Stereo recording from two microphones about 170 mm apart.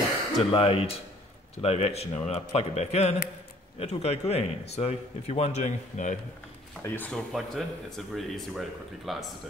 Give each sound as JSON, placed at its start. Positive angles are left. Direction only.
{"t": 0.4, "sound": "speech", "side_deg": 35}
{"t": 6.8, "sound": "speech", "side_deg": 10}